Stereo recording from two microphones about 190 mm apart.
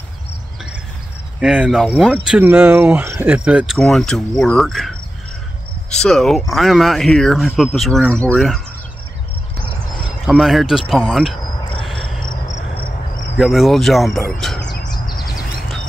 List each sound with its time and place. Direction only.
1.4 s speech: 5° right (ahead or behind)
2.3 s speech: 10° right (ahead or behind)
10.2 s speech: centre (ahead or behind)
11.8 s cricket: centre (ahead or behind)
12.4 s cricket: 35° left (ahead or behind)
13.4 s speech: centre (ahead or behind)
14.9 s bird: 20° left (ahead or behind)